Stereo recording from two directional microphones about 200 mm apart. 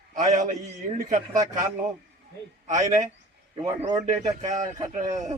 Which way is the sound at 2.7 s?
40° right (ahead or behind).